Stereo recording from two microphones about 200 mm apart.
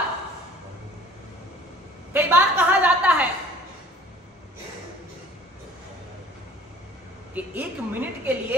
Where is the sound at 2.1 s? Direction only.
10° right (ahead or behind).